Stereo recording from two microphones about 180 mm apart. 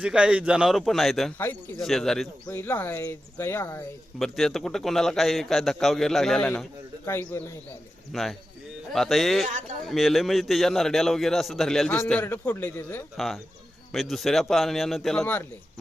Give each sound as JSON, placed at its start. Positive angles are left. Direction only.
{"t": 0.0, "sound": "a man's voice", "side_deg": -5}
{"t": 1.4, "sound": "a man's voice", "side_deg": 10}
{"t": 4.2, "sound": "a man's voice", "side_deg": 0}
{"t": 8.1, "sound": "a man's voice", "side_deg": 0}
{"t": 9.5, "sound": "speech", "side_deg": -45}
{"t": 9.8, "sound": "a man's voice", "side_deg": 0}
{"t": 13.1, "sound": "a man's voice", "side_deg": 0}